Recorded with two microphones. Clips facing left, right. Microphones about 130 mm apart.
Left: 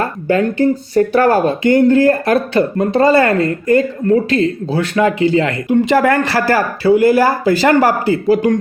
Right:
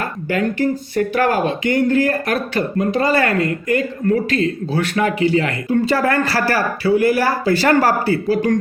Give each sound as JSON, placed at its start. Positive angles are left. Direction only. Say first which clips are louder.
{"t": 0.0, "sound": "speech", "louder": "left 5 dB", "side_deg": 30}